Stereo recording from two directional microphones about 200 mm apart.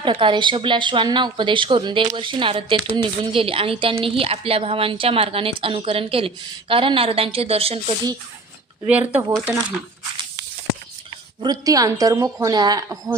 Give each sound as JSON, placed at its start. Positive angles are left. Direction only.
{"t": 0.0, "sound": "speech", "side_deg": -25}
{"t": 8.9, "sound": "speech", "side_deg": -10}
{"t": 11.3, "sound": "speech", "side_deg": -20}